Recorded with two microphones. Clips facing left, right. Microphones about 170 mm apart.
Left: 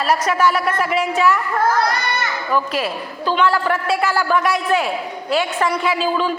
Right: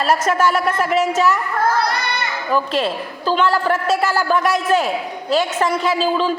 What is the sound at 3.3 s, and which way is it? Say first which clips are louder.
A man's voice: right 1 dB; 40° right (ahead or behind).